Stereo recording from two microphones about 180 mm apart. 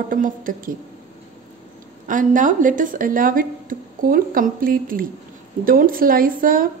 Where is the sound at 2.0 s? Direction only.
45° right (ahead or behind).